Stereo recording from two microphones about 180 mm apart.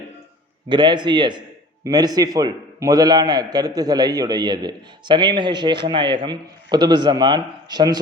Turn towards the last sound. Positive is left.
turn(degrees=-20)  # may be behind; listen again after turning